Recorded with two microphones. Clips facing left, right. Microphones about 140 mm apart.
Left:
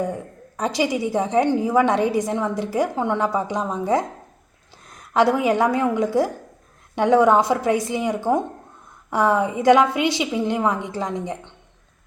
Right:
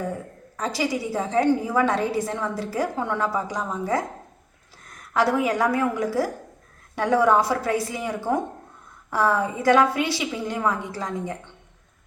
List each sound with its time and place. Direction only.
0.0 s a woman's voice: 20° left (ahead or behind)